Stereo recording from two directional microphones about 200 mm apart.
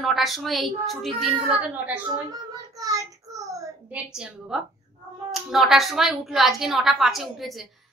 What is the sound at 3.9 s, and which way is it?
A woman's voice, 5° right (ahead or behind).